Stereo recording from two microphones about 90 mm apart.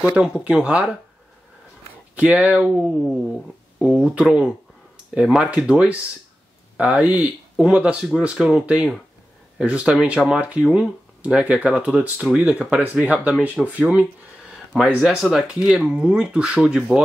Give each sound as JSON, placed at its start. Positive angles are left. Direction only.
{"t": 0.1, "sound": "speech", "side_deg": -10}
{"t": 2.1, "sound": "speech", "side_deg": -15}